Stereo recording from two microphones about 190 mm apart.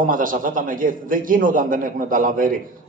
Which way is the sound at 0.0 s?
45° right (ahead or behind).